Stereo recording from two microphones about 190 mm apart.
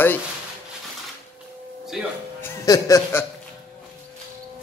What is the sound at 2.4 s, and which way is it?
Speech, 15° left (ahead or behind).